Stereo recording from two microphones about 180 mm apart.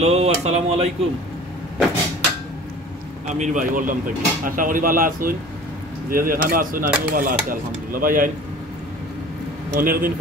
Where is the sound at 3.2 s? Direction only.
40° right (ahead or behind).